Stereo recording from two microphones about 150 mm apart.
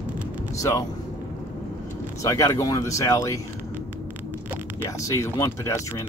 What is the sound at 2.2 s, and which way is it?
Speech, 25° left (ahead or behind).